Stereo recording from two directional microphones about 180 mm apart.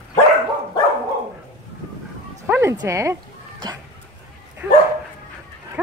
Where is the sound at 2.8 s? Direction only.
15° right (ahead or behind).